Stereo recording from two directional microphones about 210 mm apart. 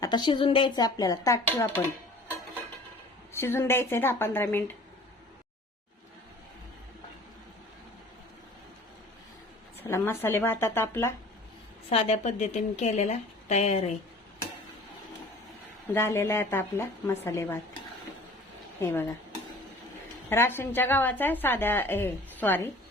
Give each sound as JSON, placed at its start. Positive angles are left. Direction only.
{"t": 0.0, "sound": "a woman's voice", "side_deg": 20}
{"t": 3.3, "sound": "a woman's voice", "side_deg": 10}
{"t": 9.8, "sound": "a woman's voice", "side_deg": 10}
{"t": 11.9, "sound": "a woman's voice", "side_deg": 30}
{"t": 15.9, "sound": "a woman's voice", "side_deg": 10}
{"t": 18.8, "sound": "speech", "side_deg": 10}
{"t": 20.3, "sound": "a woman's voice", "side_deg": 10}